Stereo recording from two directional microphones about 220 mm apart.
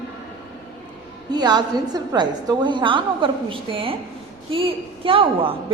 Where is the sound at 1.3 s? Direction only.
20° right (ahead or behind).